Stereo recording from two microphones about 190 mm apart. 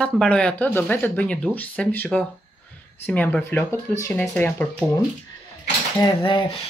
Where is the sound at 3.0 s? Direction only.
10° left (ahead or behind).